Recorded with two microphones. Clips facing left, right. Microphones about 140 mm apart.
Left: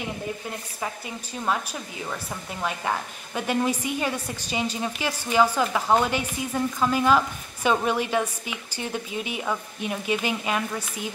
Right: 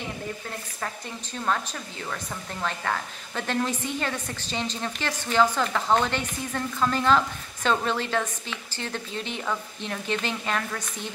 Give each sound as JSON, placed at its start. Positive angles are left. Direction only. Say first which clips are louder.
{"t": 0.7, "sound": "a woman's voice", "louder": "left 2 dB", "side_deg": 10}